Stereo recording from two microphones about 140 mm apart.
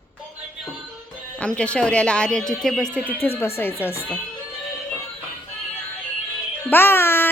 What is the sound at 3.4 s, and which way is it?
Speech, 15° left (ahead or behind).